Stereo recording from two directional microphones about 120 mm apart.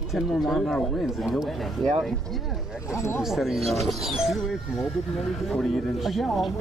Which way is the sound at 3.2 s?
Centre (ahead or behind).